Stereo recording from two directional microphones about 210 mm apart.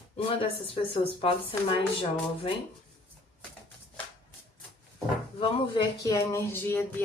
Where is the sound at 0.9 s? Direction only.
25° left (ahead or behind).